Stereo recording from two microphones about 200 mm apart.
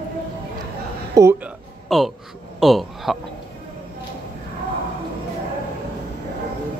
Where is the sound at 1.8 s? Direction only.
Centre (ahead or behind).